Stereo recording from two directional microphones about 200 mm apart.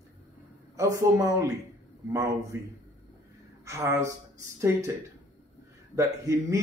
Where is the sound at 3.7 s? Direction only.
15° right (ahead or behind).